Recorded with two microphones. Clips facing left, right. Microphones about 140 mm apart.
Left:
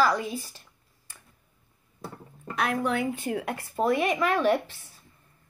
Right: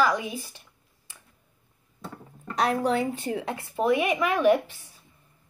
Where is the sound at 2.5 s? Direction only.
35° right (ahead or behind); by 5.0 s 15° right (ahead or behind).